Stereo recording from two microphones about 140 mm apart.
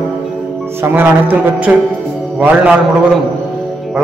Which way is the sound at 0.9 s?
15° right (ahead or behind).